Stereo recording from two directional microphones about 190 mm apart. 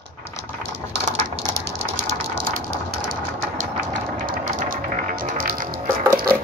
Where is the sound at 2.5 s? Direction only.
45° right (ahead or behind).